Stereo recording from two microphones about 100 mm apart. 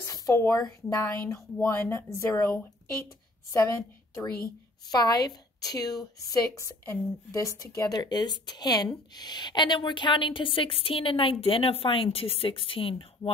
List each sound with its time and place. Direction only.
0.3 s a woman's voice: 25° left (ahead or behind); by 13.3 s 65° left (ahead or behind)